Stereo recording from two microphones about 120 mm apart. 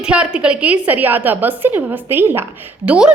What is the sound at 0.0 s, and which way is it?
A woman's voice, 10° right (ahead or behind).